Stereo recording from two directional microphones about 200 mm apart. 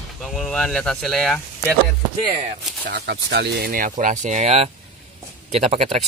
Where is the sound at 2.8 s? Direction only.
55° right (ahead or behind).